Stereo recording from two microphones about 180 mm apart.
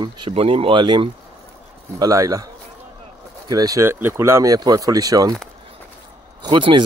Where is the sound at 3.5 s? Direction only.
20° right (ahead or behind).